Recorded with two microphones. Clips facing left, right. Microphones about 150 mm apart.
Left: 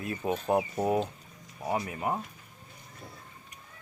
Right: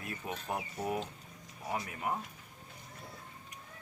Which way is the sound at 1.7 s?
25° left (ahead or behind).